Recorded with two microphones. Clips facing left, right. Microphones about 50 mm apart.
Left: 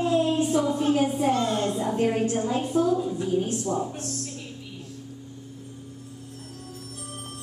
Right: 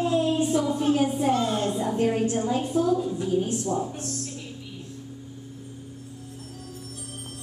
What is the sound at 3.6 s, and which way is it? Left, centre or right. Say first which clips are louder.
Speech: even; left.